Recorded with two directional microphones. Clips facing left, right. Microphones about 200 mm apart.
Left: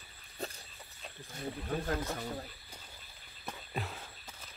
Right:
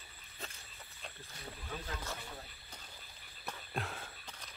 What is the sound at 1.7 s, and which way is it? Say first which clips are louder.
Speech: left 8 dB; 50° left (ahead or behind).